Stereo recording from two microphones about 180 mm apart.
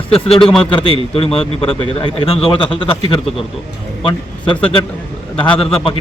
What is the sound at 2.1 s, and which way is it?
Speech, 35° left (ahead or behind).